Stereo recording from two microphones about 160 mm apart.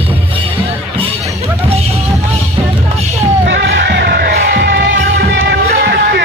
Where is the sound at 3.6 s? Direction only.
90° right.